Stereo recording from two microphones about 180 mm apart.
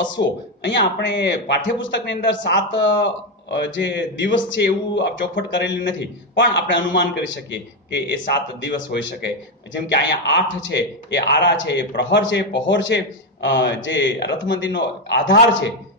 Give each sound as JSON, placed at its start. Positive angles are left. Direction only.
{"t": 0.6, "sound": "a man's voice", "side_deg": 80}